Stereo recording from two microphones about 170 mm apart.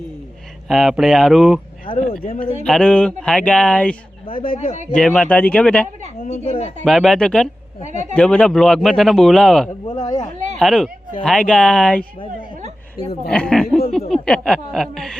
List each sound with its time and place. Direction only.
0.7 s speech: centre (ahead or behind)
1.9 s speech: 30° left (ahead or behind)
2.6 s speech: 5° left (ahead or behind)
4.3 s speech: 30° left (ahead or behind)
4.9 s speech: 5° left (ahead or behind)
6.2 s speech: 40° left (ahead or behind)
6.8 s speech: centre (ahead or behind)
9.8 s speech: 25° left (ahead or behind)
10.6 s speech: centre (ahead or behind)
13.3 s a sound: 5° left (ahead or behind)
14.1 s speech: 5° left (ahead or behind)